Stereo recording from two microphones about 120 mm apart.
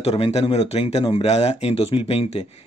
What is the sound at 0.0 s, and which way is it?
Speech, 60° left (ahead or behind).